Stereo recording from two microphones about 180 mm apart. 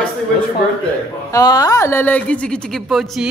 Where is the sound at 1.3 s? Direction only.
20° left (ahead or behind).